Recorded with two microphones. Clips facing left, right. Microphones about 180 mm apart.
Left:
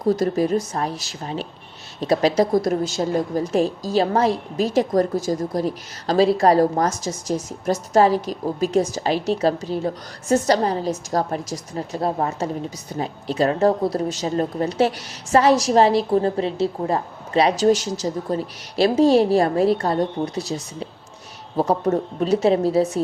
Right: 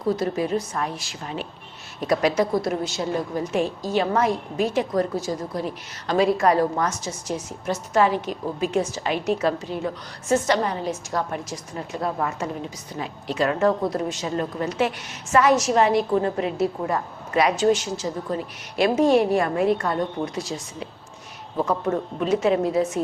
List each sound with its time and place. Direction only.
0.0 s a woman's voice: 40° left (ahead or behind)